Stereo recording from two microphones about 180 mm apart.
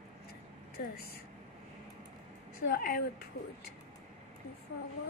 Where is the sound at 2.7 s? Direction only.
55° left (ahead or behind).